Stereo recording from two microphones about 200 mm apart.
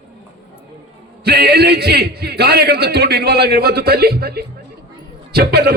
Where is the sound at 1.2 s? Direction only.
55° right (ahead or behind).